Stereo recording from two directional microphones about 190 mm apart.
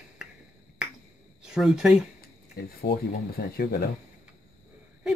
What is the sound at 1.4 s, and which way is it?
Speech, 5° right (ahead or behind).